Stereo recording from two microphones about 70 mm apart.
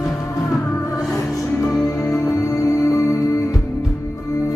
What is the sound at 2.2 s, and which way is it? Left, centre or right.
Music, left.